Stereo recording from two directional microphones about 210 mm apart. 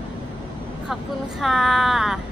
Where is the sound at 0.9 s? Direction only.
Centre (ahead or behind).